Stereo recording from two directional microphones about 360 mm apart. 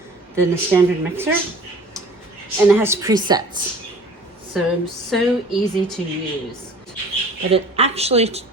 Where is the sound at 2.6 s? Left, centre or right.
Centre.